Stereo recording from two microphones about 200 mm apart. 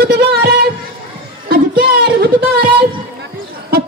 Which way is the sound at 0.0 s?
55° right (ahead or behind).